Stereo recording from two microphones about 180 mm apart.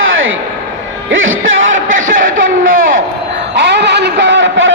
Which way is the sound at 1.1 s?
90° right.